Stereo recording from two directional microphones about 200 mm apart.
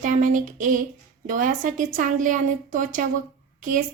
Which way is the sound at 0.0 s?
40° right (ahead or behind).